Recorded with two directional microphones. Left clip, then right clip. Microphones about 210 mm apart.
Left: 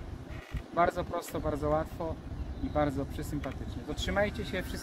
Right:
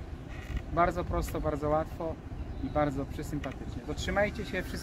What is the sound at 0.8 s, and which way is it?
Speech, 5° left (ahead or behind).